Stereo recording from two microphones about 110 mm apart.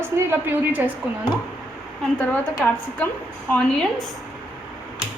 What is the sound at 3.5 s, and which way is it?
Speech, 10° left (ahead or behind).